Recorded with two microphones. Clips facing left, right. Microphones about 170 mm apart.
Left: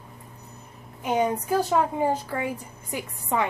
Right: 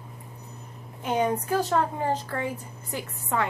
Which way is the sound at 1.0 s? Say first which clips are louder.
Left 1 dB; 10° left (ahead or behind).